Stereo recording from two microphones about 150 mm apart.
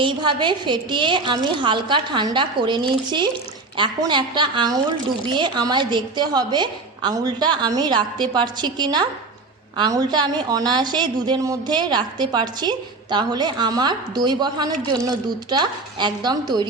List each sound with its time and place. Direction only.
0.0 s a woman's voice: 30° right (ahead or behind)